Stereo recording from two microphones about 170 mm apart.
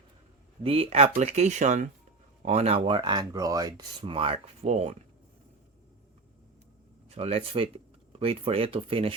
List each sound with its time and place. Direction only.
0.6 s speech: 35° right (ahead or behind)
7.1 s speech: 40° right (ahead or behind)